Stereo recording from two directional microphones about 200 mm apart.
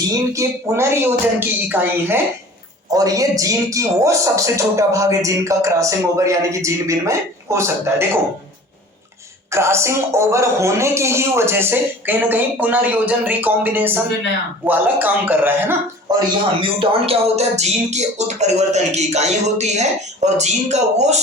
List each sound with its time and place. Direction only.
0.1 s speech: 15° right (ahead or behind)
9.5 s speech: 15° right (ahead or behind)
16.6 s speech: 30° right (ahead or behind)